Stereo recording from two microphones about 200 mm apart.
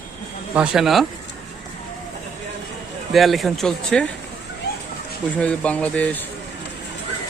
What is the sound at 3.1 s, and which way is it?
Speech, centre (ahead or behind).